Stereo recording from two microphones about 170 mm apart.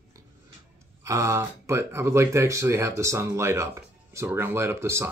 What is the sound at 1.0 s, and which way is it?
Speech, 15° right (ahead or behind).